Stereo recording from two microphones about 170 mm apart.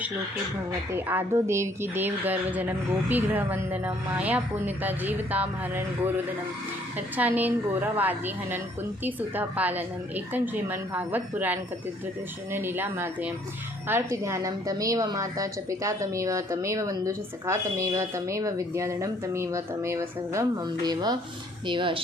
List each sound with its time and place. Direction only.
0.9 s a woman's voice: 10° right (ahead or behind)
7.2 s a woman's voice: 10° right (ahead or behind); by 22.0 s 30° right (ahead or behind)